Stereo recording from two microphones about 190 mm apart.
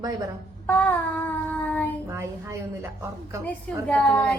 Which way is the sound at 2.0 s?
15° right (ahead or behind).